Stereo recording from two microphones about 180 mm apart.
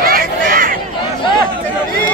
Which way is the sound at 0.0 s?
55° right (ahead or behind).